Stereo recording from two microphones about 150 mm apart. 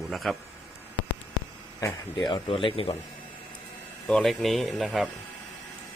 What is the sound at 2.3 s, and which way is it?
Speech, 35° left (ahead or behind).